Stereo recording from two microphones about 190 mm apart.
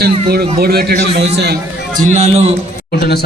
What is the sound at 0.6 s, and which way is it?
Speech, 55° right (ahead or behind).